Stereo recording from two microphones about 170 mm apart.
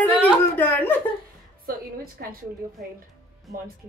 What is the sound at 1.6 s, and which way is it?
Music, 60° right (ahead or behind).